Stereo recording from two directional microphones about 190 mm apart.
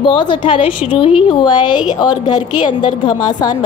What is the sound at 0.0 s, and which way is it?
A woman's voice, 25° left (ahead or behind).